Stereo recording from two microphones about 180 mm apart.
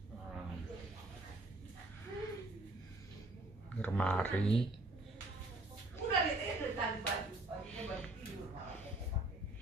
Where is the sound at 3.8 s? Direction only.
5° left (ahead or behind).